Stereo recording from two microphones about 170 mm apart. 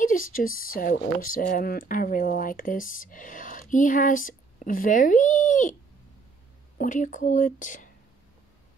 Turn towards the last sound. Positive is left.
turn(degrees=50)  # may be behind; listen again after turning